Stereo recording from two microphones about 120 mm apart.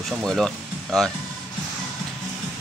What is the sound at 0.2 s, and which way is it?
Speech, 5° left (ahead or behind).